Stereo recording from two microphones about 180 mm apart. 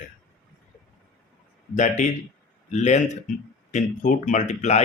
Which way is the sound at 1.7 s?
45° left (ahead or behind).